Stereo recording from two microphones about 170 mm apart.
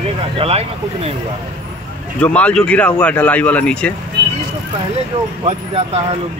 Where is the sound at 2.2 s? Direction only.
5° left (ahead or behind).